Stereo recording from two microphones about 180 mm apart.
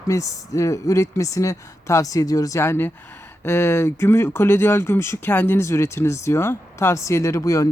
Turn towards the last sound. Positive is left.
turn(degrees=20)  # may be behind; listen again after turning